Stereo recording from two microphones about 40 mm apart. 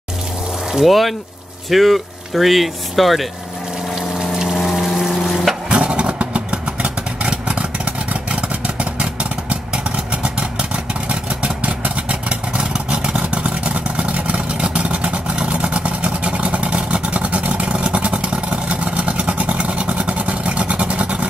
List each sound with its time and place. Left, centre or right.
0.8 s speech: centre
3.9 s pump: centre
5.7 s vehicle: right